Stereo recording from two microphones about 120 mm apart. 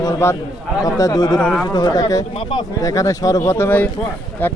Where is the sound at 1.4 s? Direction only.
5° left (ahead or behind).